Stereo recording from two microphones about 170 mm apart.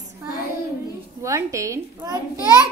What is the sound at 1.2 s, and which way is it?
A woman's voice, 20° right (ahead or behind).